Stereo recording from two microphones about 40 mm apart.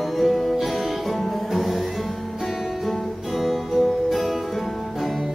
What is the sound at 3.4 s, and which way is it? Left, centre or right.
Music, centre.